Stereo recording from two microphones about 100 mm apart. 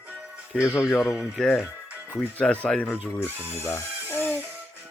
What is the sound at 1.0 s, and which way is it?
Speech, 10° right (ahead or behind).